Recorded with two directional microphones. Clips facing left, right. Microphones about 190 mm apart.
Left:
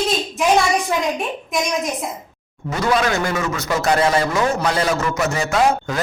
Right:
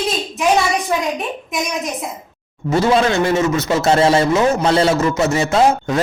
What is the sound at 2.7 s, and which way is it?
A man's voice, 30° right (ahead or behind).